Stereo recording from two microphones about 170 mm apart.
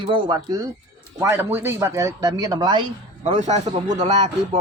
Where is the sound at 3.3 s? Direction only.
45° right (ahead or behind).